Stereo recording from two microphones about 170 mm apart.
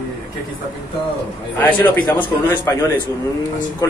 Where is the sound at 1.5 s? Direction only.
10° left (ahead or behind).